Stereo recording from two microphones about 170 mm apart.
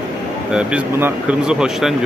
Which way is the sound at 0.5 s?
5° right (ahead or behind).